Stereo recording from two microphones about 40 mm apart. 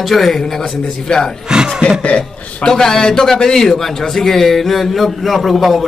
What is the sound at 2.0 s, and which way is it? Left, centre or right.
Speech, left.